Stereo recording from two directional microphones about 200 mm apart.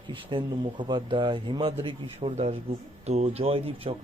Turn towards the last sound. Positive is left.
turn(degrees=-30)  # may be behind; listen again after turning